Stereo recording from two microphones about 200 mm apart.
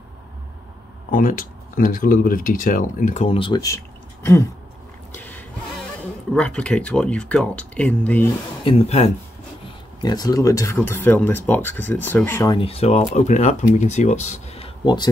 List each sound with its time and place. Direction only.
1.1 s speech: 45° left (ahead or behind); by 4.4 s 15° left (ahead or behind)
6.3 s speech: 5° left (ahead or behind)
8.6 s speech: 30° left (ahead or behind)
10.0 s speech: 20° left (ahead or behind)
12.5 s speech: 30° left (ahead or behind)